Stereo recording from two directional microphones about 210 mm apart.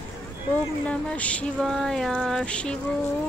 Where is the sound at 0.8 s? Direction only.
5° left (ahead or behind).